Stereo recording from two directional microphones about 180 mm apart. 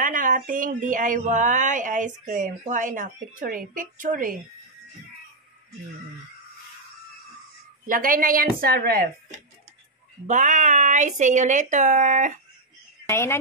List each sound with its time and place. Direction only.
0.0 s speech: 50° right (ahead or behind)
7.8 s speech: 50° right (ahead or behind)
10.2 s speech: 45° right (ahead or behind)
13.1 s a woman's voice: 15° left (ahead or behind)